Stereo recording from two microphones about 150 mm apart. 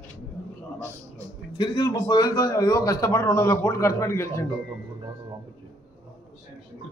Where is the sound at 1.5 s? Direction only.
25° left (ahead or behind).